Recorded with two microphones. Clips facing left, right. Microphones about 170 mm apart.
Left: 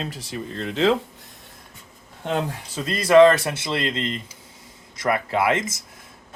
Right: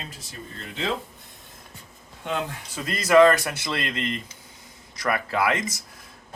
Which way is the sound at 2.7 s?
30° left (ahead or behind).